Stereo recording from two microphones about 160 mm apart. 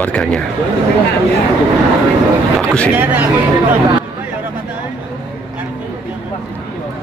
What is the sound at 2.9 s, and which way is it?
Speech, 10° right (ahead or behind).